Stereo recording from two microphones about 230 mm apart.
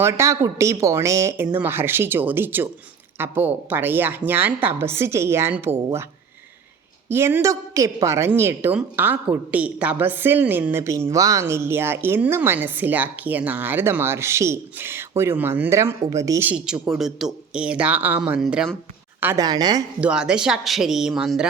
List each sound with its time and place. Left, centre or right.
0.0 s a woman's voice: centre
7.1 s a woman's voice: centre
19.2 s a woman's voice: centre
20.0 s speech: centre